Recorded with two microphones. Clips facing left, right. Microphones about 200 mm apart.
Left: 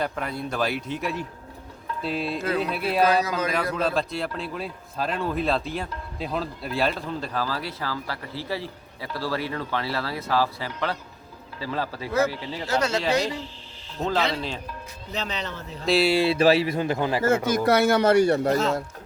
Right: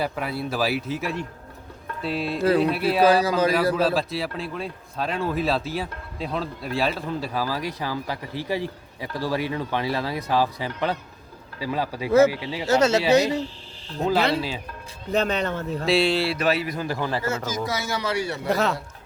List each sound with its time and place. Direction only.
0.0 s speech: 5° right (ahead or behind)
2.4 s a man's voice: 30° right (ahead or behind)
2.6 s speech: centre (ahead or behind)
3.0 s a man's voice: 30° right (ahead or behind)
3.8 s a man's voice: centre (ahead or behind)
12.6 s speech: 25° right (ahead or behind)
14.0 s a man's voice: 5° right (ahead or behind)
15.1 s a man's voice: 50° right (ahead or behind)
15.9 s speech: centre (ahead or behind)
16.1 s a man's voice: 20° left (ahead or behind)
16.4 s a man's voice: 30° left (ahead or behind)
17.2 s speech: 55° left (ahead or behind)
18.4 s a man's voice: 60° right (ahead or behind)